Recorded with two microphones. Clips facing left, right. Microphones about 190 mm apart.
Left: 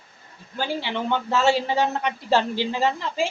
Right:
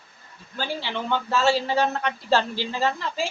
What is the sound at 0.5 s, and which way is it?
A man's voice, 20° left (ahead or behind).